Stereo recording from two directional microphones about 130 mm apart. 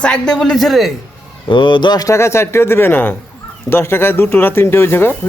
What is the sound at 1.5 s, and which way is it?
Speech, 40° left (ahead or behind).